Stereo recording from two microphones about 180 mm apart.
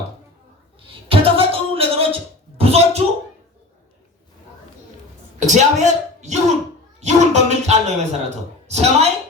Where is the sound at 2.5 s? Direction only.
35° right (ahead or behind).